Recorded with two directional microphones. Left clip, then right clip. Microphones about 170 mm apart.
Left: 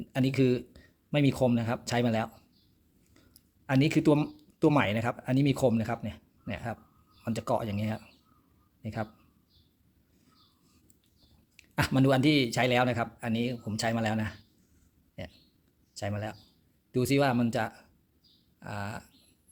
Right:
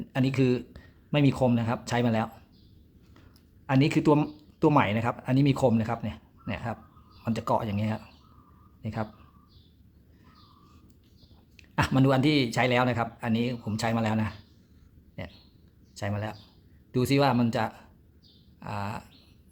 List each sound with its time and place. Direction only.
0.1 s speech: 15° left (ahead or behind)
3.7 s speech: 15° left (ahead or behind)
11.5 s speech: 20° left (ahead or behind)